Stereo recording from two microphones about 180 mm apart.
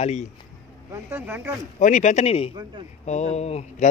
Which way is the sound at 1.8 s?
45° left (ahead or behind).